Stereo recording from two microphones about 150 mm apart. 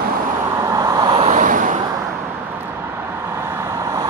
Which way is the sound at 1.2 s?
60° right (ahead or behind).